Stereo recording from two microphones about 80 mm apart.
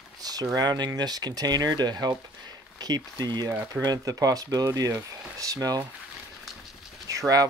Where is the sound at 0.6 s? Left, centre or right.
Right.